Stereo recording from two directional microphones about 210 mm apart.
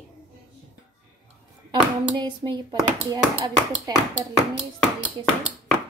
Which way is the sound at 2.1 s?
20° right (ahead or behind).